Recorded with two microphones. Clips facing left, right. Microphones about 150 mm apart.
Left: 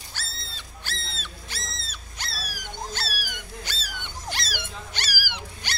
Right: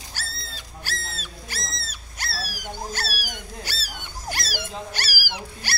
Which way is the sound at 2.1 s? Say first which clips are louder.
Right 4 dB; 10° right (ahead or behind).